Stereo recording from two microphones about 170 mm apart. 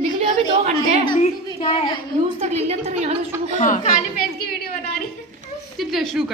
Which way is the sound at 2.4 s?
40° right (ahead or behind).